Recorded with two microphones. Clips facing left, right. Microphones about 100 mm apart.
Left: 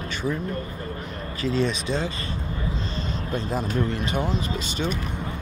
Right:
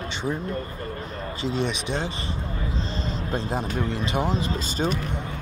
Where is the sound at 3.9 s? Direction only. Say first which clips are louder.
Right 1 dB; 30° right (ahead or behind).